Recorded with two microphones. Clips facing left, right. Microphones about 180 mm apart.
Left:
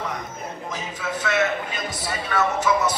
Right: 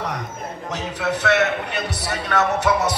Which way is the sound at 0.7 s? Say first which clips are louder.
Right 7 dB; 70° right (ahead or behind).